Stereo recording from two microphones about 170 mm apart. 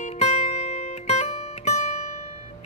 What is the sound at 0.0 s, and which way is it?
Music, 40° left (ahead or behind).